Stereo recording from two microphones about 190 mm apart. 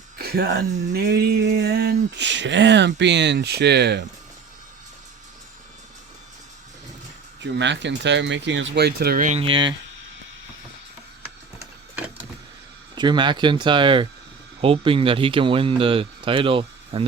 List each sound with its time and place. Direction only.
0.2 s speech: 55° right (ahead or behind)
7.4 s speech: 70° right (ahead or behind); by 9.4 s 45° right (ahead or behind)
9.4 s speech: 25° right (ahead or behind)
11.2 s a sound: 10° right (ahead or behind)
13.0 s speech: 25° right (ahead or behind)